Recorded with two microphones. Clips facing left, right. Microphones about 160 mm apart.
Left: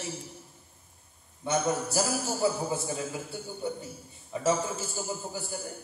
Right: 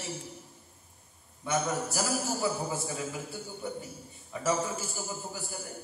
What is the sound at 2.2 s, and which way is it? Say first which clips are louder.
A man's voice: left 3 dB; 20° left (ahead or behind).